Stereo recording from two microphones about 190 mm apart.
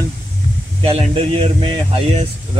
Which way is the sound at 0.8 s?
30° right (ahead or behind).